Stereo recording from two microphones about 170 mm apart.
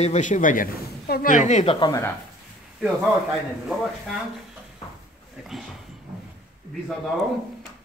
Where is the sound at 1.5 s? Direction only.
35° left (ahead or behind).